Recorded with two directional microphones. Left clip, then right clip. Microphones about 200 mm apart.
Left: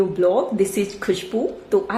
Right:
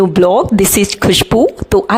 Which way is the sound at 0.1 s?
50° right (ahead or behind).